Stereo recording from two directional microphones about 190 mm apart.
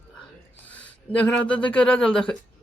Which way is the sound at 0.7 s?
5° left (ahead or behind).